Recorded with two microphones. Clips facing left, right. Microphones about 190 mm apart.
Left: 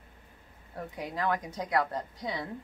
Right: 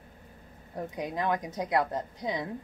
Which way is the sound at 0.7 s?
20° right (ahead or behind).